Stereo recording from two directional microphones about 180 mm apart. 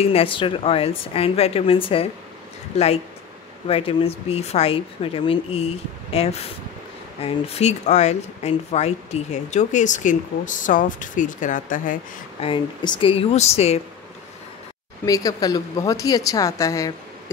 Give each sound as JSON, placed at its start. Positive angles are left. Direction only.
{"t": 0.0, "sound": "speech", "side_deg": 30}
{"t": 3.6, "sound": "speech", "side_deg": 30}
{"t": 12.4, "sound": "speech", "side_deg": 30}
{"t": 15.0, "sound": "a woman's voice", "side_deg": 20}